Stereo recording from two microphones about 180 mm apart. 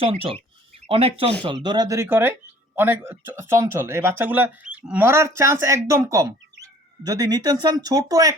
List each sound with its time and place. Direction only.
0.0 s speech: 30° right (ahead or behind)